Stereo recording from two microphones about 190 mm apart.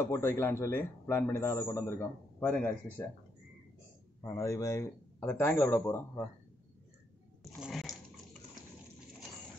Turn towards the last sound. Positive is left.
turn(degrees=0)  # may be behind; listen again after turning